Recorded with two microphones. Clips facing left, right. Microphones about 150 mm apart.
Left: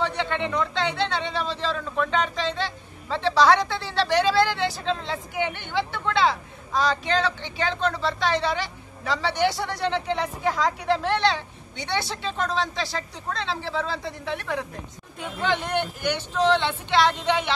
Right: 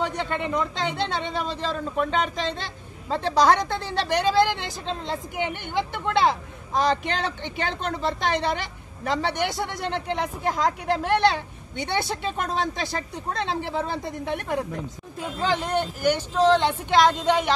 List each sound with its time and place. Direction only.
0.0 s a woman's voice: 45° right (ahead or behind)
5.7 s a woman's voice: 50° right (ahead or behind)
15.4 s speech: 40° right (ahead or behind)